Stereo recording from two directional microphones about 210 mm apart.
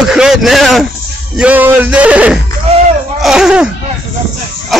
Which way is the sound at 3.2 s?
Centre (ahead or behind).